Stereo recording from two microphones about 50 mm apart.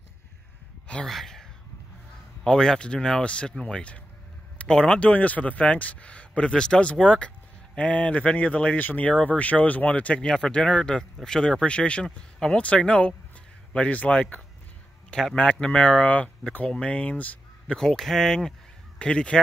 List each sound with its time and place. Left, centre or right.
1.0 s a sound: centre
2.4 s speech: centre
5.1 s speech: left
10.2 s speech: centre
15.0 s speech: centre
17.7 s speech: centre
18.9 s speech: left